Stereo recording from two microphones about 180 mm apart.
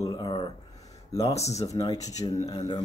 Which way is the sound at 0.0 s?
20° left (ahead or behind).